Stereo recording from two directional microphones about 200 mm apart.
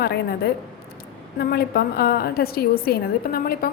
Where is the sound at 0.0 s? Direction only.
55° left (ahead or behind).